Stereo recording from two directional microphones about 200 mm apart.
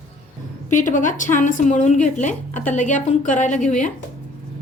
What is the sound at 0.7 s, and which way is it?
A woman's voice, 40° left (ahead or behind).